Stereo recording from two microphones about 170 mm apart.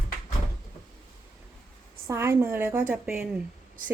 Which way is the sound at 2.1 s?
15° right (ahead or behind).